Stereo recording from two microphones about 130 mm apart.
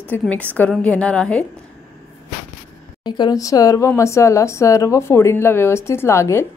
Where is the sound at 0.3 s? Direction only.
10° left (ahead or behind).